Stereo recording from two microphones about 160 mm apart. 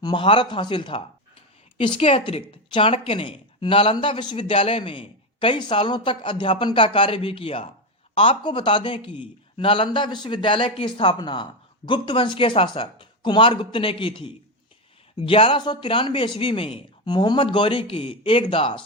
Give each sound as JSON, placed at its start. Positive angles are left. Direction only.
{"t": 0.0, "sound": "a woman's voice", "side_deg": 30}